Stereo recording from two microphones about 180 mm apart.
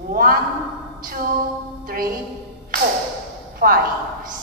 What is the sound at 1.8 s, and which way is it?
Music, 55° right (ahead or behind).